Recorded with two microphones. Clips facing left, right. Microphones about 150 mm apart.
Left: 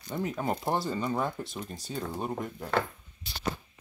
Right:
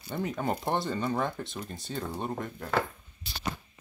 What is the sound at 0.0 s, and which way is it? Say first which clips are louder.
Speech: even; centre (ahead or behind).